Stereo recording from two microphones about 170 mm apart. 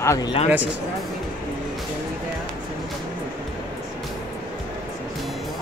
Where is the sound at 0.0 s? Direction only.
20° left (ahead or behind).